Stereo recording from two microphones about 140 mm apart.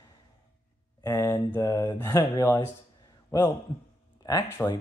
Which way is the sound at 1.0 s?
20° left (ahead or behind).